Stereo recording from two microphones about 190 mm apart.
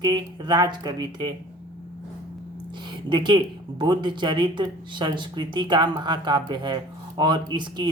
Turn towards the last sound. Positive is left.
turn(degrees=-25)  # may be behind; listen again after turning